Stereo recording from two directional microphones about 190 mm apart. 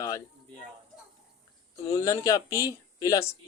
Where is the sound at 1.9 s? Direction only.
15° left (ahead or behind).